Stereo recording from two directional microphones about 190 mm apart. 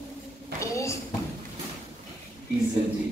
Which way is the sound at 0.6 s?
15° left (ahead or behind).